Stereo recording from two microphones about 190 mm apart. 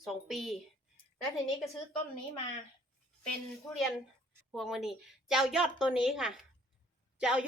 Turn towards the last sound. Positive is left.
turn(degrees=-5)  # may be behind; listen again after turning